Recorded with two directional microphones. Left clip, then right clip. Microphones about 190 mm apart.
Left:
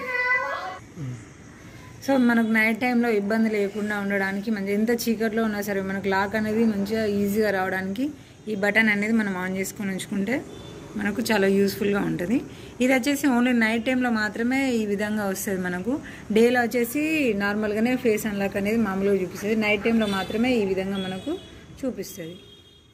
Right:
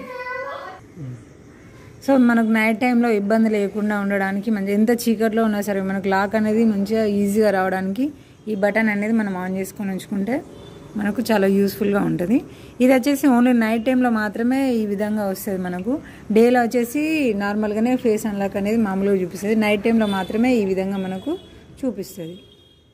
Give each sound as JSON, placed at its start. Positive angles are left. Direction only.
{"t": 2.0, "sound": "a woman's voice", "side_deg": -50}
{"t": 16.3, "sound": "a woman's voice", "side_deg": -45}